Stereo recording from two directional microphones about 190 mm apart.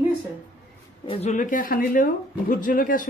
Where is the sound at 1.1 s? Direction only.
35° left (ahead or behind).